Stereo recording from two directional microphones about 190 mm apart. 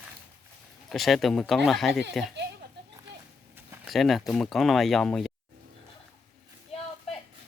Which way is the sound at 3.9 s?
Centre (ahead or behind).